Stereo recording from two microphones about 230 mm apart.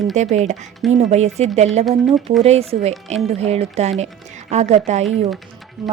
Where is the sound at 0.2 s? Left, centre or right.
Right.